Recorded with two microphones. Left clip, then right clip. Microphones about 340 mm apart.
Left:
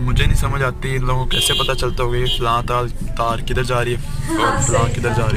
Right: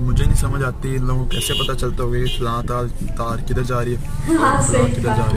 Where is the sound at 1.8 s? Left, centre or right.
Left.